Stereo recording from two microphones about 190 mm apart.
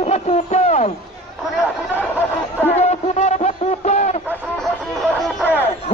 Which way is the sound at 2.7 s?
35° left (ahead or behind).